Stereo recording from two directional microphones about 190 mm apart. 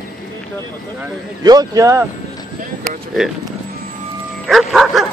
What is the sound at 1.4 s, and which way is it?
Speech, 20° right (ahead or behind).